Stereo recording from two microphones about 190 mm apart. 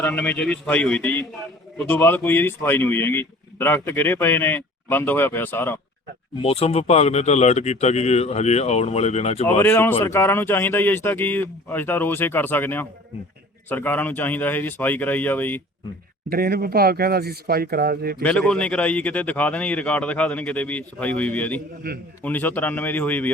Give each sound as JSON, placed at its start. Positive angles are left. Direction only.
{"t": 0.0, "sound": "a man's voice", "side_deg": 10}
{"t": 6.4, "sound": "speech", "side_deg": 30}
{"t": 9.6, "sound": "a man's voice", "side_deg": 10}
{"t": 16.3, "sound": "speech", "side_deg": -50}
{"t": 18.2, "sound": "a man's voice", "side_deg": 5}
{"t": 21.8, "sound": "a man's voice", "side_deg": -55}
{"t": 22.2, "sound": "a man's voice", "side_deg": 10}